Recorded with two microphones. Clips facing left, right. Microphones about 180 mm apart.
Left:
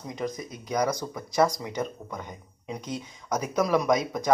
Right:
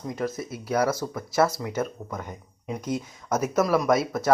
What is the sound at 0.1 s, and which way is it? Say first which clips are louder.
Speech: right 2 dB; 5° right (ahead or behind).